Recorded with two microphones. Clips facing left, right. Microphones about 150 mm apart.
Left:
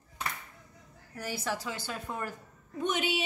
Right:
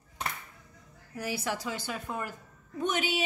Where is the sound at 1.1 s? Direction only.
10° right (ahead or behind).